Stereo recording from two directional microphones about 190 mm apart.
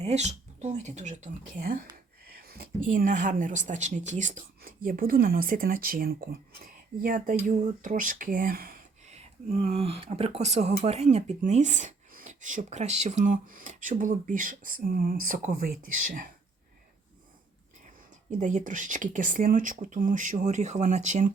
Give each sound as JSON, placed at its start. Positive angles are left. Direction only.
{"t": 0.0, "sound": "speech", "side_deg": -35}
{"t": 9.0, "sound": "speech", "side_deg": -35}
{"t": 18.3, "sound": "speech", "side_deg": -40}